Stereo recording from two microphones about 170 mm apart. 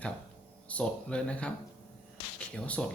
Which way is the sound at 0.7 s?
5° left (ahead or behind).